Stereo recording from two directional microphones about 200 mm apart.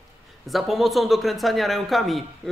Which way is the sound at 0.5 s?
Centre (ahead or behind).